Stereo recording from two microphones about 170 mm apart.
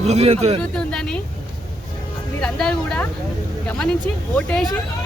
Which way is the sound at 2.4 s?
5° left (ahead or behind).